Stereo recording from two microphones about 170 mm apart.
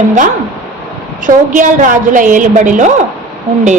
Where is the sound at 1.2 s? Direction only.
50° right (ahead or behind).